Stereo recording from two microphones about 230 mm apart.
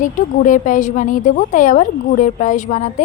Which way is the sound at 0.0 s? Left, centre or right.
Left.